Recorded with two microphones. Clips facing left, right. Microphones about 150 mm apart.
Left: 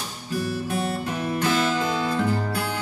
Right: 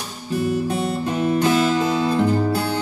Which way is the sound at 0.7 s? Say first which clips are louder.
Right 4 dB; 25° right (ahead or behind).